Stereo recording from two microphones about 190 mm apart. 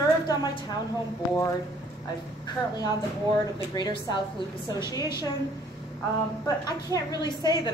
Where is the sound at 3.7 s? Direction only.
25° left (ahead or behind).